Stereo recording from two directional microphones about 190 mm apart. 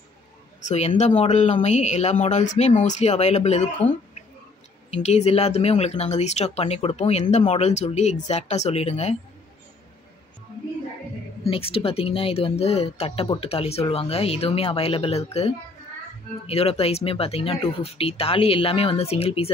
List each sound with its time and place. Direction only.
0.7 s speech: 35° left (ahead or behind)
4.9 s speech: 35° left (ahead or behind)
11.4 s speech: 30° left (ahead or behind)
16.4 s speech: 30° left (ahead or behind)